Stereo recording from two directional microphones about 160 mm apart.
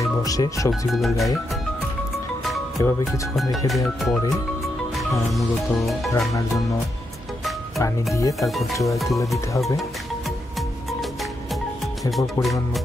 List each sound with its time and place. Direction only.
0.2 s speech: 20° left (ahead or behind)
0.7 s music: centre (ahead or behind)
2.8 s speech: 15° left (ahead or behind)
3.6 s music: centre (ahead or behind)
7.8 s speech: 20° left (ahead or behind)
8.4 s music: centre (ahead or behind)
12.4 s music: centre (ahead or behind)